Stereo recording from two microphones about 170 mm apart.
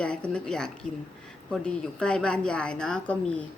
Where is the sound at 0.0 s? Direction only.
5° left (ahead or behind).